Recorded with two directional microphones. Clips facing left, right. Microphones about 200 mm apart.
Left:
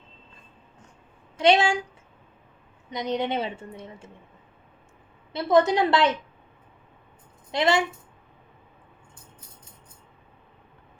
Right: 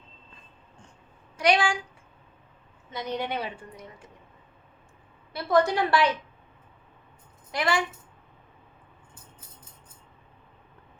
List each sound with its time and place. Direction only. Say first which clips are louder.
1.4 s speech: left 4 dB; 25° left (ahead or behind)
2.9 s a woman's voice: left 4 dB; 20° left (ahead or behind)
5.3 s a woman's voice: left 3 dB; 20° left (ahead or behind)
7.5 s a woman's voice: left 4 dB; 25° left (ahead or behind)